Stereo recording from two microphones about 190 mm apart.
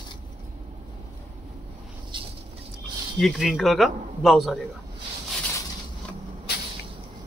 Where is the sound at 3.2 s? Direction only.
Centre (ahead or behind).